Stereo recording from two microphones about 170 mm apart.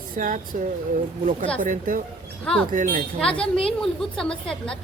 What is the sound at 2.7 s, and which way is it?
Speech, 50° right (ahead or behind).